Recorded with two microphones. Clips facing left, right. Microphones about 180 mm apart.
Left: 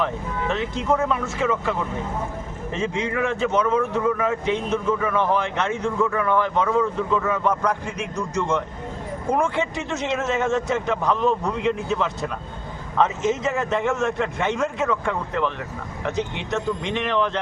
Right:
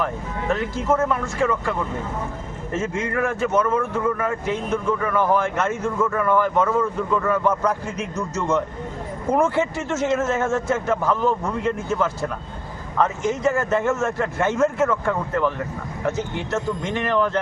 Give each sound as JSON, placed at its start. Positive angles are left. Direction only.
{"t": 0.5, "sound": "a man's voice", "side_deg": 0}
{"t": 3.0, "sound": "a man's voice", "side_deg": 0}
{"t": 13.4, "sound": "a man's voice", "side_deg": 0}